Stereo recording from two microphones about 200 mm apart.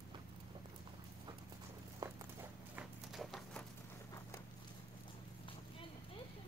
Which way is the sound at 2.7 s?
Centre (ahead or behind).